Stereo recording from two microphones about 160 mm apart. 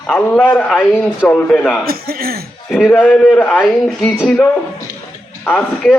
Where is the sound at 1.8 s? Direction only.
70° right (ahead or behind).